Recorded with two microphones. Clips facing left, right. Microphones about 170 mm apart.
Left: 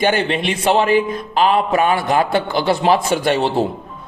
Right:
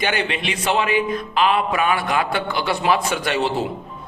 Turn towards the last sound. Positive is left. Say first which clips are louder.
# left 5 dB
turn(degrees=30)  # may be behind; listen again after turning